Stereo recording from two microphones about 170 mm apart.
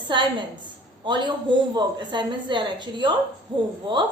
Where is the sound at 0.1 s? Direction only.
30° right (ahead or behind).